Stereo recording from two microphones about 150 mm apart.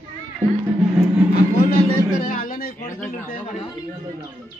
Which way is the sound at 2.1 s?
65° left (ahead or behind).